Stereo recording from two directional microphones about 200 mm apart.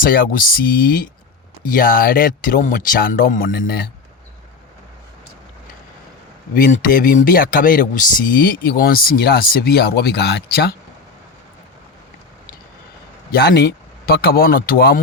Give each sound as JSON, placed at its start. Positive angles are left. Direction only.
{"t": 0.0, "sound": "speech", "side_deg": 45}
{"t": 6.5, "sound": "speech", "side_deg": 40}
{"t": 13.3, "sound": "speech", "side_deg": 55}